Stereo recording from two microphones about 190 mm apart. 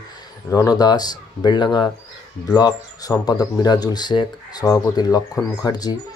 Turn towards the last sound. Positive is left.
turn(degrees=20)  # may be behind; listen again after turning